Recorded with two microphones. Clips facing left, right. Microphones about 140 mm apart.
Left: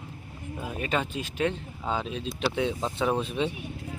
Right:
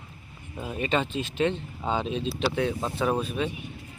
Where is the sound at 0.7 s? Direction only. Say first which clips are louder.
Right 3 dB; 5° left (ahead or behind).